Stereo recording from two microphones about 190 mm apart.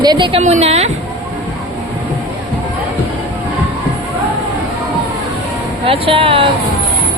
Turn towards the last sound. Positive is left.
turn(degrees=-30)  # may be behind; listen again after turning